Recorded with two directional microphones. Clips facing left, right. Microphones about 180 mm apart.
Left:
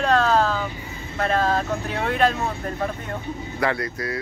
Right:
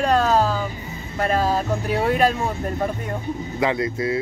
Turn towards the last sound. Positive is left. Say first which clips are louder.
# right 4 dB
turn(degrees=-20)  # may be behind; listen again after turning